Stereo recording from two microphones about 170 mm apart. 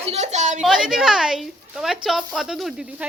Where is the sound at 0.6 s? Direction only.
Centre (ahead or behind).